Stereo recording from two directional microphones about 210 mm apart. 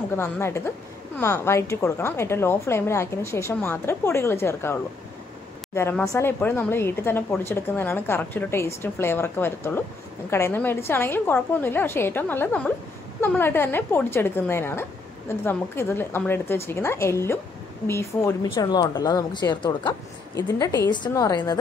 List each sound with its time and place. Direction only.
0.1 s a woman's voice: 10° left (ahead or behind)
5.8 s a woman's voice: 10° left (ahead or behind)